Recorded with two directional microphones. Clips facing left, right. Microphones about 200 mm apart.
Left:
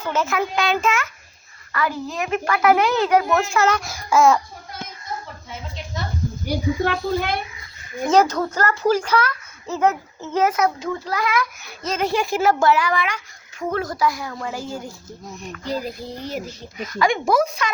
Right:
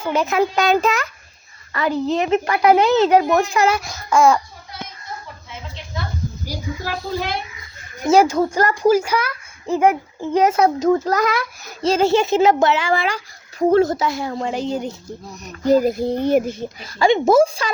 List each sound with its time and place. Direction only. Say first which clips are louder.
0.0 s a child's voice: right 3 dB; 15° right (ahead or behind)
0.5 s a child's voice: right 4 dB; 40° right (ahead or behind)
1.7 s a child's voice: right 6 dB; 25° right (ahead or behind)
3.9 s speech: even; centre (ahead or behind)
6.5 s a child's voice: left 7 dB; 60° left (ahead or behind)
8.0 s a child's voice: right 3 dB; 10° right (ahead or behind)
10.5 s a child's voice: right 7 dB; 35° right (ahead or behind)
15.6 s speech: right 12 dB; 45° right (ahead or behind)
16.7 s a child's voice: right 4 dB; 30° right (ahead or behind)